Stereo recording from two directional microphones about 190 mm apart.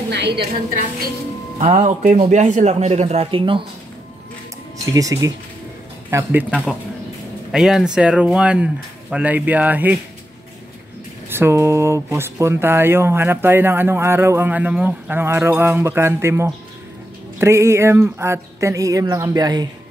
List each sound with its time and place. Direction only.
0.1 s a woman's voice: 65° right (ahead or behind)
1.6 s a man's voice: 40° right (ahead or behind)
4.9 s speech: 15° right (ahead or behind)
7.5 s speech: centre (ahead or behind)
11.2 s speech: 10° right (ahead or behind)